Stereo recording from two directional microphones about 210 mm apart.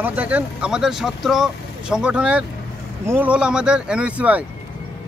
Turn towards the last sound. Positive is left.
turn(degrees=-5)  # may be behind; listen again after turning